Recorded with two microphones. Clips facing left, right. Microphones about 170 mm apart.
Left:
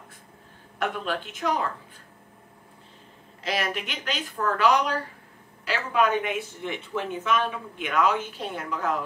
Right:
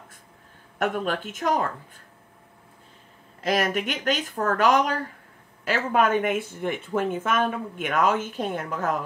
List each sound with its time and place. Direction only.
0.7 s speech: 50° right (ahead or behind)
3.4 s speech: 50° right (ahead or behind)